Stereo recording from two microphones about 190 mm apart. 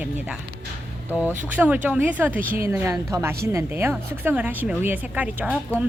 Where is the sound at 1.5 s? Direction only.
10° right (ahead or behind).